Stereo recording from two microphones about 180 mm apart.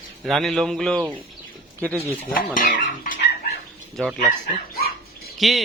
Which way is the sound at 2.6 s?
45° left (ahead or behind).